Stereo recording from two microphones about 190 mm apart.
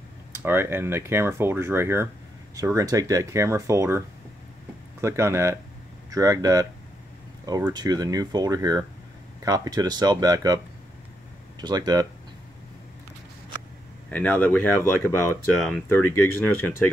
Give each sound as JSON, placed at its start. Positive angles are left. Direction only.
{"t": 0.3, "sound": "speech", "side_deg": -10}
{"t": 5.0, "sound": "speech", "side_deg": -15}
{"t": 11.6, "sound": "speech", "side_deg": -20}
{"t": 14.1, "sound": "speech", "side_deg": 10}
{"t": 15.5, "sound": "speech", "side_deg": 0}